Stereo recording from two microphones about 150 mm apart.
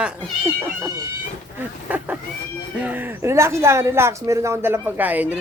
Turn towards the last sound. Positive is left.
turn(degrees=-10)  # may be behind; listen again after turning